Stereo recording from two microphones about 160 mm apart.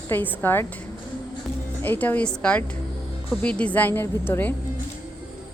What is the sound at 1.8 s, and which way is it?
A woman's voice, 10° left (ahead or behind).